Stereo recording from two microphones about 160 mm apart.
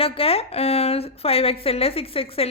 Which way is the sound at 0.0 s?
35° left (ahead or behind).